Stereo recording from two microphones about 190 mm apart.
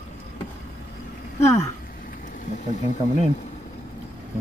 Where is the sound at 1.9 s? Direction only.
50° left (ahead or behind).